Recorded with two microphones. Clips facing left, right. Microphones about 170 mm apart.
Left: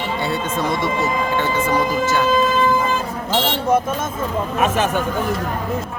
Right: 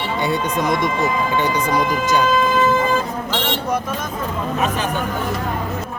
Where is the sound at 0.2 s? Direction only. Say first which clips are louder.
Right 4 dB; 15° right (ahead or behind).